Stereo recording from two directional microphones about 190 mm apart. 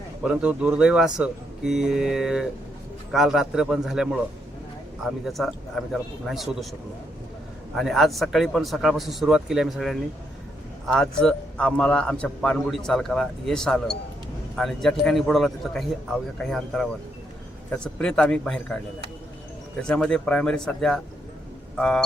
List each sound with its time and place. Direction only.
0.2 s a man's voice: 5° right (ahead or behind)
7.8 s a man's voice: centre (ahead or behind)
19.9 s a man's voice: 5° left (ahead or behind)